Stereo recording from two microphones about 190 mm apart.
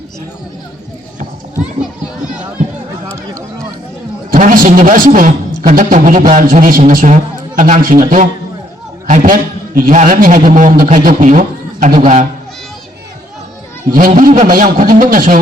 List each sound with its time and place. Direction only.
1.8 s children playing: 5° right (ahead or behind)
4.3 s a man's voice: 45° right (ahead or behind)
13.9 s a man's voice: 45° right (ahead or behind)